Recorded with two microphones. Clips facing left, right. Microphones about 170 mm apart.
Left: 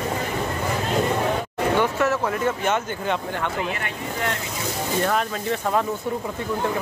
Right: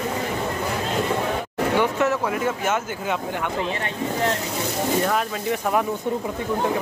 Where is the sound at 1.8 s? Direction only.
15° right (ahead or behind).